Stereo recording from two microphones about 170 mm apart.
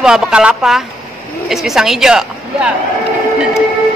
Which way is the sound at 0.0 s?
5° right (ahead or behind).